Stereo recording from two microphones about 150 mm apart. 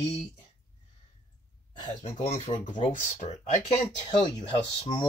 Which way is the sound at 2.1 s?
50° left (ahead or behind).